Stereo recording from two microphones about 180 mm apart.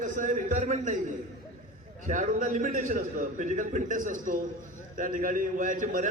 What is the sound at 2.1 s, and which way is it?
A man's voice, 45° right (ahead or behind).